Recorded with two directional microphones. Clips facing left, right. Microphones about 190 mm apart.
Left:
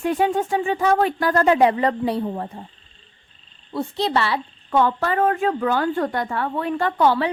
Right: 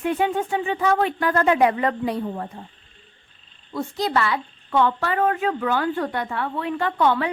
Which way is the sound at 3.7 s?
30° left (ahead or behind).